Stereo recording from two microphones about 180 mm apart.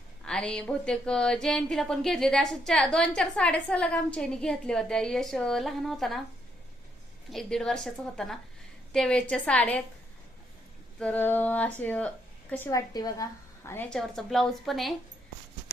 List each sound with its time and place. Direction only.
0.3 s a woman's voice: 5° left (ahead or behind)
7.3 s a woman's voice: centre (ahead or behind)
11.0 s a woman's voice: 10° left (ahead or behind)
12.9 s a woman's voice: 20° left (ahead or behind)
13.7 s a woman's voice: 5° left (ahead or behind)